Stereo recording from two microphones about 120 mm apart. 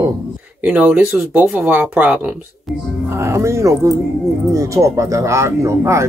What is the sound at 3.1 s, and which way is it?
Speech, 25° right (ahead or behind).